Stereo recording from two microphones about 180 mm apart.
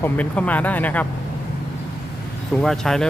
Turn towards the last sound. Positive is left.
turn(degrees=0)  # may be behind; listen again after turning